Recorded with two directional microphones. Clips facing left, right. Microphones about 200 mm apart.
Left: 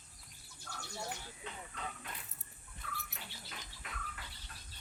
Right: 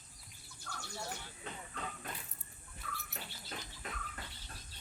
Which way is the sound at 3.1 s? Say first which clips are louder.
Right 4 dB; 40° right (ahead or behind).